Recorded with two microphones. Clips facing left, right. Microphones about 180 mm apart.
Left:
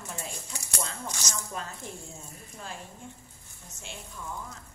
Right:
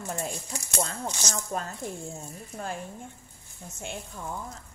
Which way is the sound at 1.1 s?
25° right (ahead or behind).